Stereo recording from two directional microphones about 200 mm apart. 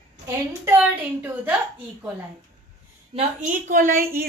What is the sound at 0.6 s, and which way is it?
Speech, 10° right (ahead or behind).